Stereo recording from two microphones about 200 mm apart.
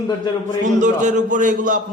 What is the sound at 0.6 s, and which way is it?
Speech, 40° right (ahead or behind).